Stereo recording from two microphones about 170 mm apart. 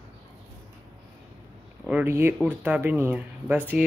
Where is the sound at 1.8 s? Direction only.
10° right (ahead or behind).